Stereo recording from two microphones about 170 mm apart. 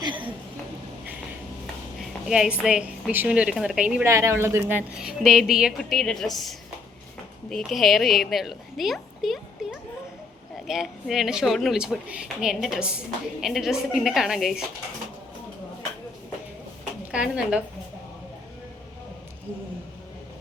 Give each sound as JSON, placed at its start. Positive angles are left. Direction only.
{"t": 0.0, "sound": "a sound", "side_deg": -30}
{"t": 2.0, "sound": "a woman's voice", "side_deg": 0}
{"t": 17.1, "sound": "a woman's voice", "side_deg": -5}